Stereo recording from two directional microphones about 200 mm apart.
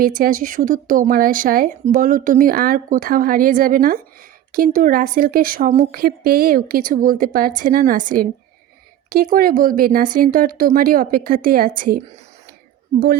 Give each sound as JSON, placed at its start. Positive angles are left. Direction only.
{"t": 0.0, "sound": "speech", "side_deg": -45}